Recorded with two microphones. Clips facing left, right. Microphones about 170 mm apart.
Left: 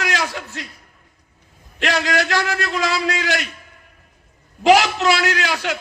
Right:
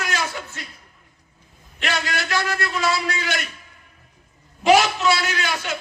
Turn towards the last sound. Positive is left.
turn(degrees=75)  # may be behind; listen again after turning